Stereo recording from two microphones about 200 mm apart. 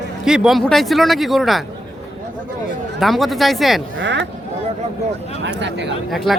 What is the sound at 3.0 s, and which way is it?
Speech, centre (ahead or behind).